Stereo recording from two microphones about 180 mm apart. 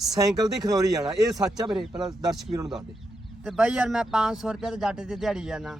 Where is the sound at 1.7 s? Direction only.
Centre (ahead or behind).